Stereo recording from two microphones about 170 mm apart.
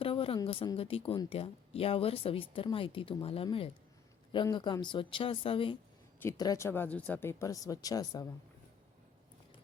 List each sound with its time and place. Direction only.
0.0 s a sound: 35° left (ahead or behind)
0.4 s speech: 30° left (ahead or behind)
6.1 s speech: 20° left (ahead or behind)